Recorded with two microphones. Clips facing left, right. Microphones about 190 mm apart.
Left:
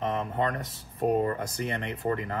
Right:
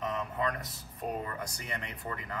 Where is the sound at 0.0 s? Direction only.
50° left (ahead or behind).